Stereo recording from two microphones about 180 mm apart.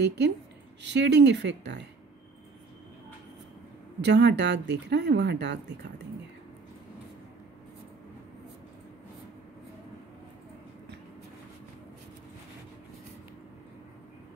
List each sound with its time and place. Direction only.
0.0 s speech: 70° right (ahead or behind)
4.0 s speech: 70° right (ahead or behind)